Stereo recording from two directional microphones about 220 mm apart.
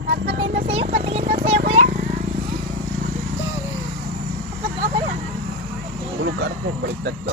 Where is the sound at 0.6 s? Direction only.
25° right (ahead or behind).